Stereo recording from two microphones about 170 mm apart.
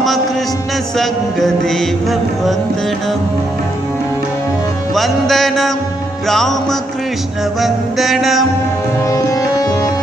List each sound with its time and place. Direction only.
0.9 s music: centre (ahead or behind)
4.9 s music: centre (ahead or behind)
9.1 s sitar: 20° left (ahead or behind)